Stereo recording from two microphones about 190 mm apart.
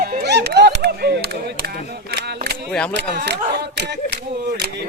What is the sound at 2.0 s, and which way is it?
Single-lens reflex camera, 60° right (ahead or behind).